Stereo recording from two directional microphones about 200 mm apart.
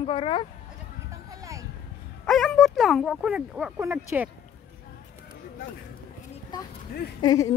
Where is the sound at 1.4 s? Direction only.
15° right (ahead or behind).